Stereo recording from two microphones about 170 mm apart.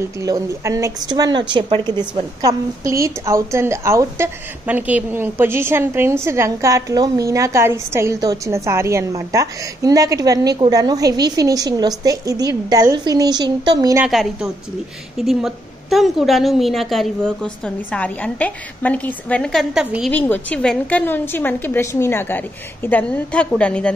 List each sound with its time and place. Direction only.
0.2 s a woman's voice: 20° right (ahead or behind)
14.0 s a woman's voice: centre (ahead or behind)
20.1 s a woman's voice: 10° left (ahead or behind)